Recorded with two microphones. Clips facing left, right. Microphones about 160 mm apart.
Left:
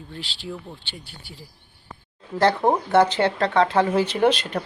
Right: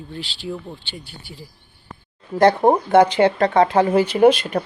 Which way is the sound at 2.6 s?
15° right (ahead or behind).